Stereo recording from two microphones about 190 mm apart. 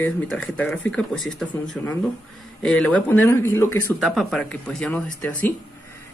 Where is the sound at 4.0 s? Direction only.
Centre (ahead or behind).